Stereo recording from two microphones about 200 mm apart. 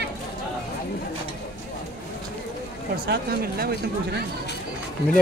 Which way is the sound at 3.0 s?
50° right (ahead or behind).